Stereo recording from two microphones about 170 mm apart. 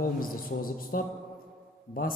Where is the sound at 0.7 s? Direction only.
55° left (ahead or behind).